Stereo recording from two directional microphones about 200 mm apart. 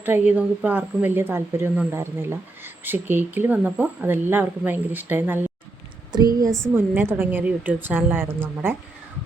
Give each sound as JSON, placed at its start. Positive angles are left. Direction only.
{"t": 0.0, "sound": "a woman's voice", "side_deg": -10}